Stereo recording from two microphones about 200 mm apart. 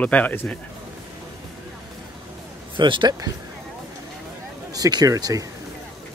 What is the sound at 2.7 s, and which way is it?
Speech, 25° right (ahead or behind).